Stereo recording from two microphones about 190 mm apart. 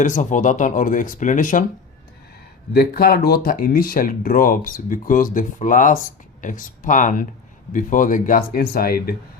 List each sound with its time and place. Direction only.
0.0 s speech: 40° left (ahead or behind)
2.7 s speech: 50° left (ahead or behind)